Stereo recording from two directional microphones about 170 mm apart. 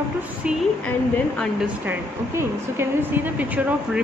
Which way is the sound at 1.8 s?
10° right (ahead or behind).